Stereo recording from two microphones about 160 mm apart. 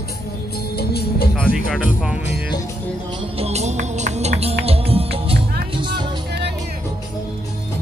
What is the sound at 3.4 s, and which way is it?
Music, 45° right (ahead or behind).